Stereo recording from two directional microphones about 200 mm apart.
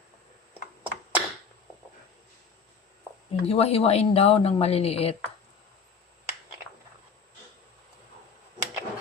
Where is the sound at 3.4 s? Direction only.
30° left (ahead or behind).